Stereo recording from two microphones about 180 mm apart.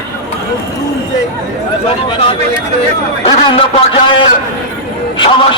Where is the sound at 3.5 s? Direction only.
30° left (ahead or behind).